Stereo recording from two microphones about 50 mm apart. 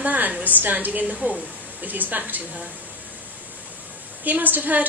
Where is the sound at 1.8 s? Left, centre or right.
Right.